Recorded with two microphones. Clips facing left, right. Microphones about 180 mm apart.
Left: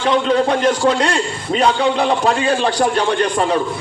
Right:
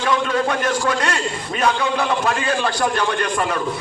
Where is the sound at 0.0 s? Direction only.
25° left (ahead or behind).